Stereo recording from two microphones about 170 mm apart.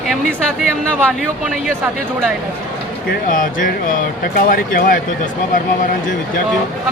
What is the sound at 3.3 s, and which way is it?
Speech, 55° left (ahead or behind).